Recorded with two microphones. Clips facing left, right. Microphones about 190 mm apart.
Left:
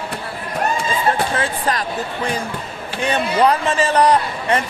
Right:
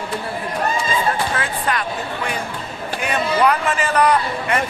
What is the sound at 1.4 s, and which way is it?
A man's voice, 35° left (ahead or behind).